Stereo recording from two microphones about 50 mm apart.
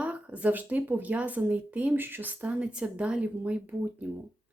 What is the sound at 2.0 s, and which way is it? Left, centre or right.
Speech, right.